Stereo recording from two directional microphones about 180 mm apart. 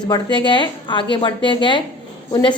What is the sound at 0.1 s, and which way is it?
A woman's voice, 25° left (ahead or behind).